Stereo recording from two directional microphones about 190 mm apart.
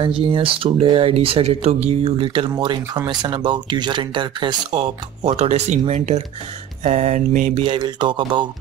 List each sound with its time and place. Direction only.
0.0 s speech: 30° right (ahead or behind)
6.8 s mantra: 40° right (ahead or behind)
7.6 s speech: 25° right (ahead or behind)